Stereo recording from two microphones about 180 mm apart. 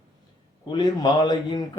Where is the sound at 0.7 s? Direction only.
20° left (ahead or behind).